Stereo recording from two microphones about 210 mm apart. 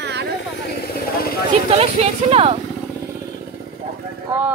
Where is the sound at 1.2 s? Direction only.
45° left (ahead or behind).